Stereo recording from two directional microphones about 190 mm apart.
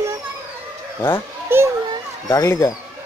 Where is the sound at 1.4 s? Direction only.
15° right (ahead or behind).